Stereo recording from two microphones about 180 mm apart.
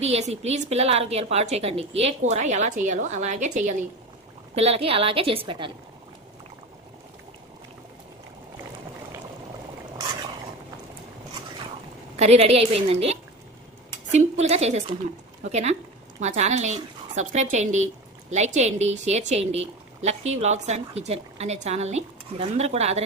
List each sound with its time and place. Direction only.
0.0 s a woman's voice: 35° right (ahead or behind)
12.1 s a woman's voice: 35° right (ahead or behind)